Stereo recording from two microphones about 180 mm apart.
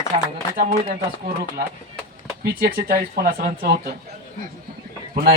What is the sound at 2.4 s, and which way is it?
Speech, 60° right (ahead or behind).